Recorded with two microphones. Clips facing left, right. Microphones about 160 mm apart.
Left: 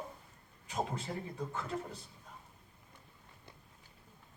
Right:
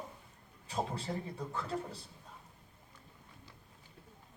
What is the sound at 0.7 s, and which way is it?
Speech, 35° right (ahead or behind).